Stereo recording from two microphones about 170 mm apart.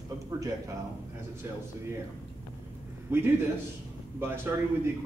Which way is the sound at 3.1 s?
15° right (ahead or behind).